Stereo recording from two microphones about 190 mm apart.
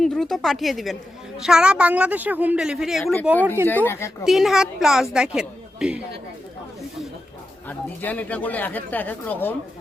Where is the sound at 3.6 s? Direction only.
10° left (ahead or behind).